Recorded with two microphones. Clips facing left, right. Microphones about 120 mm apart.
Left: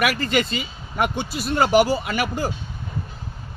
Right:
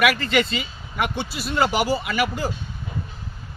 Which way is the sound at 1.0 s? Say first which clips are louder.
Left 2 dB; 45° left (ahead or behind).